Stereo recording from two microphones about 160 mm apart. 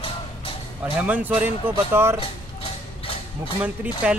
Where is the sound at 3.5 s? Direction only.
10° right (ahead or behind).